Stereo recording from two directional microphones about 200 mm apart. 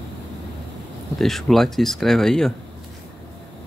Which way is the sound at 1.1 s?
Centre (ahead or behind).